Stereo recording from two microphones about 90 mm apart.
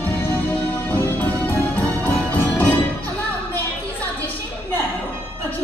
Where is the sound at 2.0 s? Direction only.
20° left (ahead or behind).